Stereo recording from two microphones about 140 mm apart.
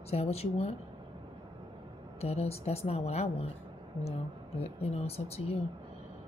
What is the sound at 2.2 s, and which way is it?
Speech, 50° left (ahead or behind).